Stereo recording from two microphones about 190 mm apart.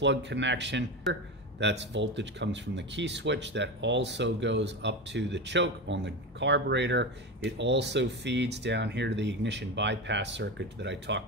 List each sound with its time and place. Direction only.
0.0 s speech: 70° right (ahead or behind)